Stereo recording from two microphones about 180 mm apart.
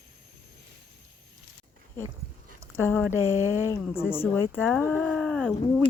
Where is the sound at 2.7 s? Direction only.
10° left (ahead or behind).